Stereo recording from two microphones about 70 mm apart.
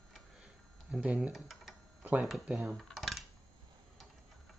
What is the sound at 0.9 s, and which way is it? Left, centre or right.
Speech, centre.